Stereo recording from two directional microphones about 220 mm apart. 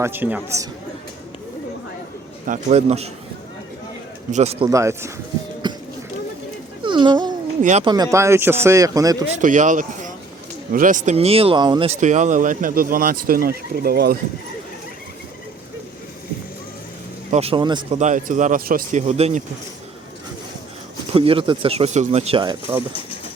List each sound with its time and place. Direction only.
0.0 s speech: 10° right (ahead or behind)
2.5 s speech: 30° right (ahead or behind)
4.3 s speech: 30° right (ahead or behind)
4.7 s speech: 15° right (ahead or behind)
5.6 s a sound: 20° right (ahead or behind)
6.8 s a sound: 20° right (ahead or behind)
7.6 s speech: 30° right (ahead or behind)
7.9 s speech: 15° right (ahead or behind)
9.4 s speech: 35° right (ahead or behind)
17.3 s speech: 25° right (ahead or behind)
17.9 s speech: 35° right (ahead or behind)
21.1 s speech: 25° right (ahead or behind)